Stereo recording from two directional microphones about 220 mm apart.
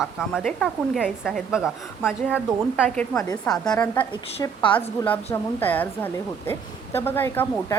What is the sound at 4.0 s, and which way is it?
Speech, 20° left (ahead or behind).